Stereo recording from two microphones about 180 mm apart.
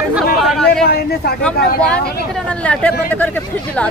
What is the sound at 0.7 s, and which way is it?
Speech, 60° left (ahead or behind).